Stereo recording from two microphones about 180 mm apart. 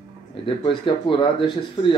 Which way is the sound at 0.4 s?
30° left (ahead or behind).